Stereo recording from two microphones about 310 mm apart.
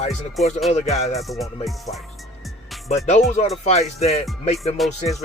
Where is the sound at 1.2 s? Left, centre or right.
Centre.